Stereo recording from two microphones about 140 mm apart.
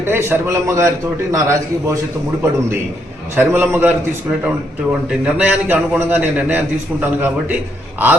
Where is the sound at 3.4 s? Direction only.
15° right (ahead or behind).